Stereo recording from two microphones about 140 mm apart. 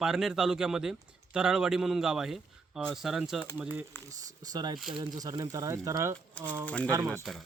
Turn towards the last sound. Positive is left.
turn(degrees=0)  # may be behind; listen again after turning